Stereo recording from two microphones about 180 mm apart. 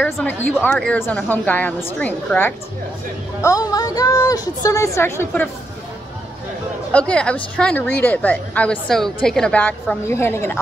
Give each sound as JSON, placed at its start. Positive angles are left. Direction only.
{"t": 0.0, "sound": "a woman's voice", "side_deg": 10}
{"t": 6.9, "sound": "a woman's voice", "side_deg": 5}